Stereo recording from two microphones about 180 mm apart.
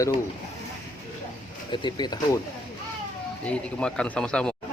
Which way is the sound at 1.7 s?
25° left (ahead or behind).